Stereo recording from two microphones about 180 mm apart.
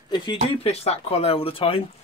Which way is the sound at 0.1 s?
25° left (ahead or behind).